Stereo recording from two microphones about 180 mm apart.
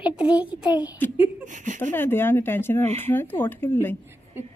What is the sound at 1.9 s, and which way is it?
Speech, 10° left (ahead or behind).